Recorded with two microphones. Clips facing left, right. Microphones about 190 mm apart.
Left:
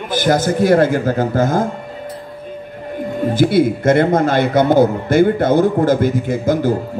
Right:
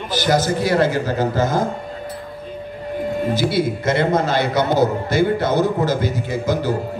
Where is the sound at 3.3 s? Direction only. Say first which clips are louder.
Left 6 dB; 55° left (ahead or behind).